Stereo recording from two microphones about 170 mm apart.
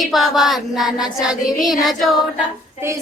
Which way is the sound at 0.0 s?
Centre (ahead or behind).